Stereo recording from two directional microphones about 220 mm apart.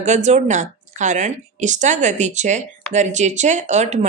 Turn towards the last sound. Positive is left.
turn(degrees=-30)  # may be behind; listen again after turning